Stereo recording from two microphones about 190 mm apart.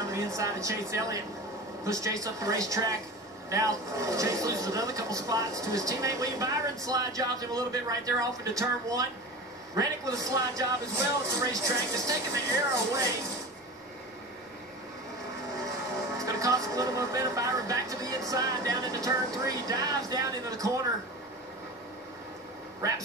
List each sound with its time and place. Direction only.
0.1 s speech: 15° right (ahead or behind)
16.2 s speech: 15° right (ahead or behind)
22.8 s speech: 15° right (ahead or behind)